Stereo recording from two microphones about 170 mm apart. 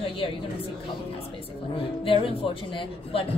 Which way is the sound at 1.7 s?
35° left (ahead or behind).